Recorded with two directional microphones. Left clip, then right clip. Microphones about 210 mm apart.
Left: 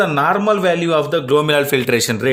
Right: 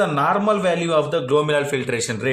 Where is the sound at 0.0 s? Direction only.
40° left (ahead or behind).